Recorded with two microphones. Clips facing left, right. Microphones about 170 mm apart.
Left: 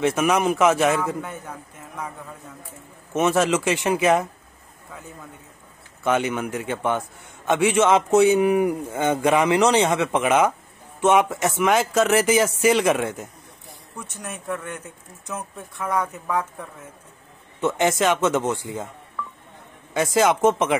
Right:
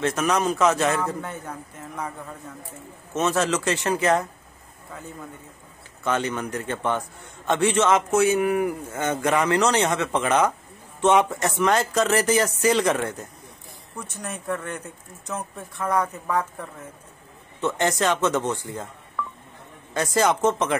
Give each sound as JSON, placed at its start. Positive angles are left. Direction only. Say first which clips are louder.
{"t": 0.0, "sound": "a man's voice", "louder": "left 3 dB", "side_deg": 10}
{"t": 3.1, "sound": "a man's voice", "louder": "left 3 dB", "side_deg": 10}
{"t": 6.0, "sound": "a man's voice", "louder": "left 3 dB", "side_deg": 10}
{"t": 14.2, "sound": "speech", "louder": "right 1 dB", "side_deg": 5}
{"t": 17.6, "sound": "a man's voice", "louder": "left 3 dB", "side_deg": 10}
{"t": 18.4, "sound": "a man's voice", "louder": "left 2 dB", "side_deg": 25}
{"t": 20.2, "sound": "a man's voice", "louder": "left 3 dB", "side_deg": 5}